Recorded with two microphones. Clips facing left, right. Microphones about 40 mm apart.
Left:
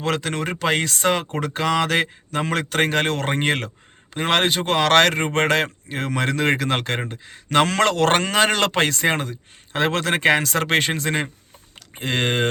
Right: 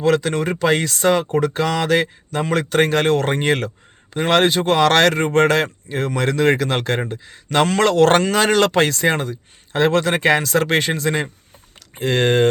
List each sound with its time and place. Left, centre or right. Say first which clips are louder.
0.0 s speech: right 6 dB; left
1.8 s mantra: right 3 dB; left
2.4 s speech: right 4 dB; left